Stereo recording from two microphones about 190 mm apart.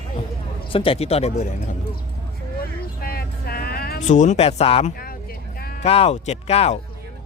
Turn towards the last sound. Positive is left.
turn(degrees=35)  # may be behind; listen again after turning